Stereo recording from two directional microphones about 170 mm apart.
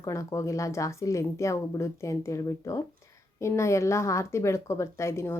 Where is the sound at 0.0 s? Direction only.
20° left (ahead or behind).